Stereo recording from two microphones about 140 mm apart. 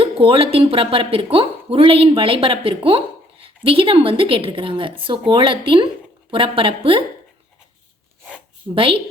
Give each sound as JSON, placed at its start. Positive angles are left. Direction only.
{"t": 0.0, "sound": "speech", "side_deg": -40}
{"t": 8.7, "sound": "speech", "side_deg": -40}